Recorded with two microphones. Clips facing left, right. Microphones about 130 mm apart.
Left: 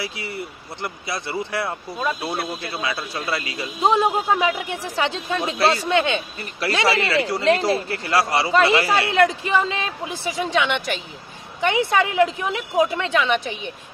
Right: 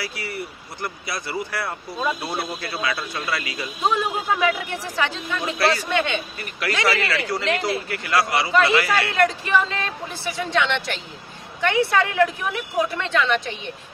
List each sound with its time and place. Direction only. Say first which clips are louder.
0.0 s speech: left 1 dB; 25° left (ahead or behind)
2.0 s speech: even; centre (ahead or behind)
2.6 s speech: even; 25° left (ahead or behind)